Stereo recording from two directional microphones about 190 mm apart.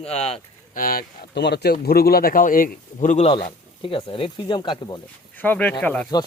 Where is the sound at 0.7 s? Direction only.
50° left (ahead or behind); by 4.9 s 25° left (ahead or behind).